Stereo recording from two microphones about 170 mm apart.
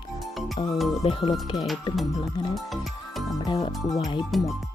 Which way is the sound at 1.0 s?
30° left (ahead or behind).